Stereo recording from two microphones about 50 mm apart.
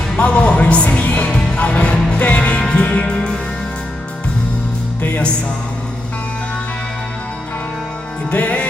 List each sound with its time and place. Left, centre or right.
0.2 s speech: left
1.5 s music: left
5.0 s music: left
8.3 s music: left